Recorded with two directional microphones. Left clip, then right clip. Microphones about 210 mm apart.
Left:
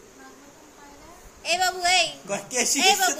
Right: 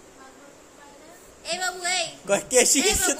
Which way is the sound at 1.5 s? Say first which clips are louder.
Left 5 dB; 15° left (ahead or behind).